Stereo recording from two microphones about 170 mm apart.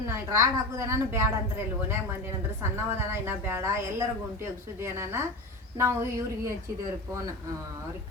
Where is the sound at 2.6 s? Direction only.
15° right (ahead or behind).